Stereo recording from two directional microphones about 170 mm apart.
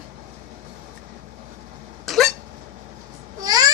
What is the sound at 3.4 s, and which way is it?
Baby cry, 20° right (ahead or behind).